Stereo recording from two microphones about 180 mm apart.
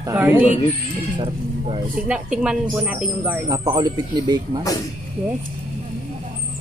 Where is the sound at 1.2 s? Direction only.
30° right (ahead or behind).